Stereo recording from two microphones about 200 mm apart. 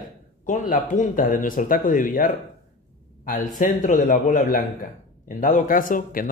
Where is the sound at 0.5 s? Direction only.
40° left (ahead or behind).